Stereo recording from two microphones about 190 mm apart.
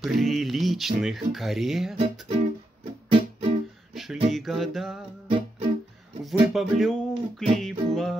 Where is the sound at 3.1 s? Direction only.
30° right (ahead or behind).